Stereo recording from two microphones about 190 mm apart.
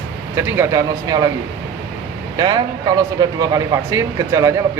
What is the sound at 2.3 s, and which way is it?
Speech, 20° right (ahead or behind).